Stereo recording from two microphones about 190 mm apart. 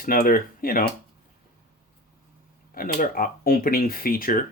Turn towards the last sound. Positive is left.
turn(degrees=50)  # may be behind; listen again after turning